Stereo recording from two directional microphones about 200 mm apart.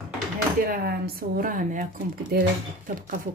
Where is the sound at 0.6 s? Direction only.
50° right (ahead or behind).